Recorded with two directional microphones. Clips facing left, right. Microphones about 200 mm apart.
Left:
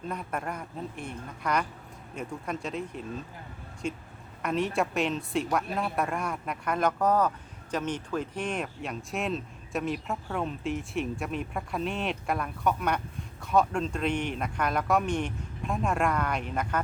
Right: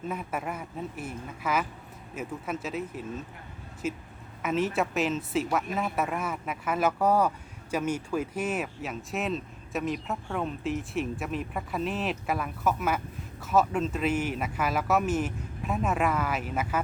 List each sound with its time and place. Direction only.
0.1 s speech: 5° right (ahead or behind)